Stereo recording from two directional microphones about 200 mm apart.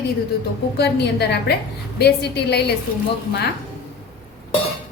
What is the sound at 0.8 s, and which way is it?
A woman's voice, 55° left (ahead or behind).